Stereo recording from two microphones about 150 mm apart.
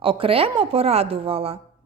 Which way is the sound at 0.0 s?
35° right (ahead or behind).